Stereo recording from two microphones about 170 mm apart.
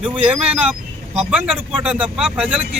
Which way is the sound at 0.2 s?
5° right (ahead or behind).